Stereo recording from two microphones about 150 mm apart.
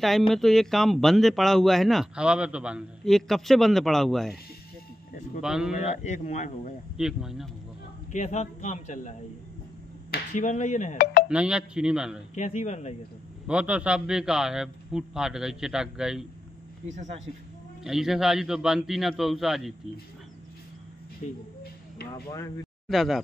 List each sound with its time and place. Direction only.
0.3 s a man's voice: centre (ahead or behind)
5.4 s a man's voice: 5° right (ahead or behind)
5.9 s a man's voice: 50° left (ahead or behind)
7.0 s a man's voice: 5° right (ahead or behind)
8.1 s a man's voice: 50° left (ahead or behind)
10.3 s speech: 55° left (ahead or behind)
11.2 s a man's voice: 5° right (ahead or behind)
12.4 s a man's voice: 50° left (ahead or behind)
13.5 s a man's voice: 10° right (ahead or behind)
16.8 s speech: 50° right (ahead or behind)
17.8 s a man's voice: centre (ahead or behind)
21.2 s speech: 55° left (ahead or behind)
22.1 s speech: 25° left (ahead or behind)
22.8 s a man's voice: centre (ahead or behind)